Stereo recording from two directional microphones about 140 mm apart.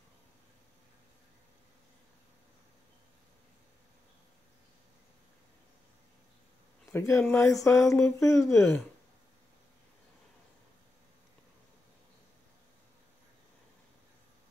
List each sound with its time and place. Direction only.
6.9 s speech: 20° left (ahead or behind)